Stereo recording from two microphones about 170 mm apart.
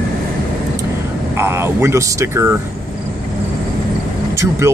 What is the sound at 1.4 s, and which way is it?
Speech, 15° right (ahead or behind).